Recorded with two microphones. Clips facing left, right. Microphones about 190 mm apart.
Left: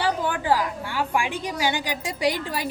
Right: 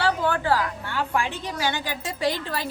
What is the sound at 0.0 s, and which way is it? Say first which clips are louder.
A woman's voice: right 1 dB; 15° left (ahead or behind).